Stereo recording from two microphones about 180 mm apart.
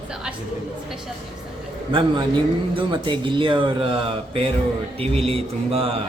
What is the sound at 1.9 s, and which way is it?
Speech, 30° right (ahead or behind).